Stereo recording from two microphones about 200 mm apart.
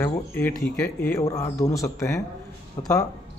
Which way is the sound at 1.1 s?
15° left (ahead or behind).